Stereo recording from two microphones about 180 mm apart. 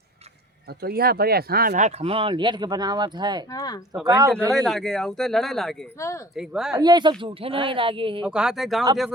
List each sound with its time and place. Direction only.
0.7 s speech: 60° right (ahead or behind)
1.7 s speech: 40° right (ahead or behind); by 3.4 s 25° right (ahead or behind)
3.5 s speech: 20° left (ahead or behind)
4.0 s speech: 20° right (ahead or behind)
4.5 s speech: centre (ahead or behind)
6.0 s speech: 15° left (ahead or behind)
6.3 s speech: centre (ahead or behind)
6.7 s speech: 25° right (ahead or behind)
8.2 s speech: 5° right (ahead or behind)